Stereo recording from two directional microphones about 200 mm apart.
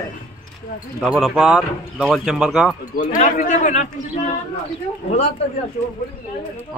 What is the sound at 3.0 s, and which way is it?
Speech, 40° left (ahead or behind).